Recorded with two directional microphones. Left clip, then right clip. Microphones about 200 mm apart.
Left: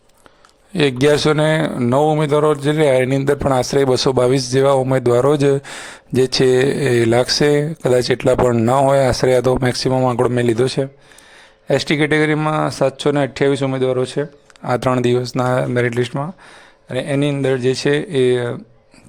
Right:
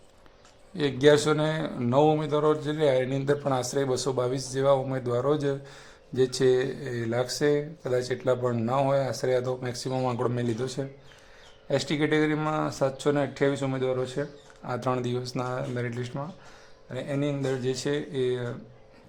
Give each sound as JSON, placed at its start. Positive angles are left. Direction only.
{"t": 0.7, "sound": "speech", "side_deg": 45}